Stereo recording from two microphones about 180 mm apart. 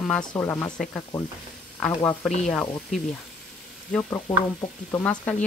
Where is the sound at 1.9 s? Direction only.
15° left (ahead or behind).